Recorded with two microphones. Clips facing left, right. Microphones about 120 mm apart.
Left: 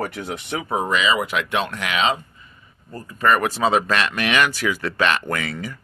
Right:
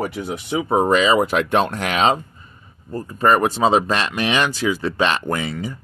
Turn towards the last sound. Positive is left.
turn(degrees=-25)  # may be behind; listen again after turning